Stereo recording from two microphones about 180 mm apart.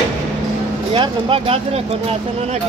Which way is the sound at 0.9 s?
30° right (ahead or behind).